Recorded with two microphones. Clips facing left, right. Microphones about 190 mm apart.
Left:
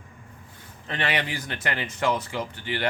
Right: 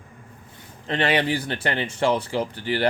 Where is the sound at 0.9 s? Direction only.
30° right (ahead or behind).